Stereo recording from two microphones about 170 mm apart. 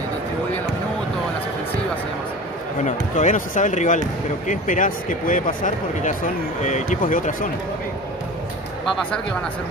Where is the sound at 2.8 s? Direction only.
45° left (ahead or behind).